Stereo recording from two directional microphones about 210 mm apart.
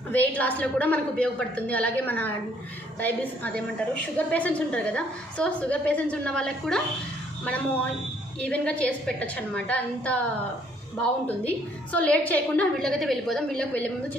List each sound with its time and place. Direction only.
0.1 s a woman's voice: 10° left (ahead or behind)
8.4 s a woman's voice: 5° left (ahead or behind)
11.4 s a woman's voice: 5° left (ahead or behind)